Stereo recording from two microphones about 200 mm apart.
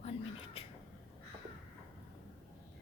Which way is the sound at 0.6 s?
30° left (ahead or behind).